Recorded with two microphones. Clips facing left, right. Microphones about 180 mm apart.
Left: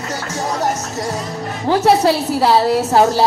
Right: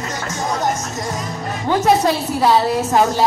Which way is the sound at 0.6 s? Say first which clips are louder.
Left 1 dB; 35° left (ahead or behind).